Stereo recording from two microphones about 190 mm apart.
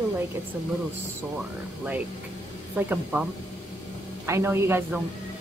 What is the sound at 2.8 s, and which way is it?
Speech, 10° right (ahead or behind).